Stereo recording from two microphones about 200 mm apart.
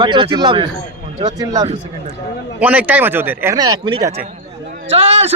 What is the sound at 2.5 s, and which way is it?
Speech, 10° right (ahead or behind).